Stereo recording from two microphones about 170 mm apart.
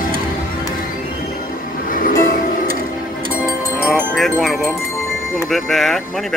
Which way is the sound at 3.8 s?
Centre (ahead or behind).